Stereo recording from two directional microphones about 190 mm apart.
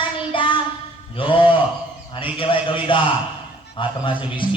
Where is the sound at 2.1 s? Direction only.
30° left (ahead or behind).